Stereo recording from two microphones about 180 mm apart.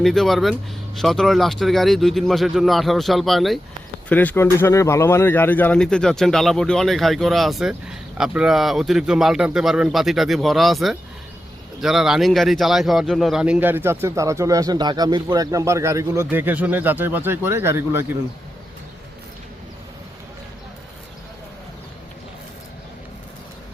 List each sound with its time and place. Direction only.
0.0 s speech: centre (ahead or behind)